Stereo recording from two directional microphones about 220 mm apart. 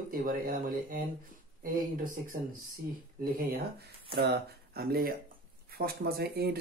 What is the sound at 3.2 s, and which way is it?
Speech, 45° right (ahead or behind).